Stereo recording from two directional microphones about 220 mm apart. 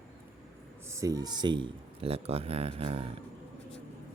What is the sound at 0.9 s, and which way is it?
Speech, 15° right (ahead or behind).